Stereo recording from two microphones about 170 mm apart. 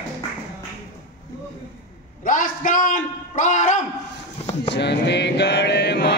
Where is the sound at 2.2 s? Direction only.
50° left (ahead or behind).